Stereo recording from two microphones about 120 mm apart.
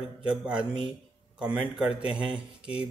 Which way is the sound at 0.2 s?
10° right (ahead or behind).